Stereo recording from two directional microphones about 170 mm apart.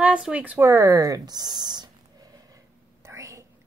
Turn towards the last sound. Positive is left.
turn(degrees=-15)  # may be behind; listen again after turning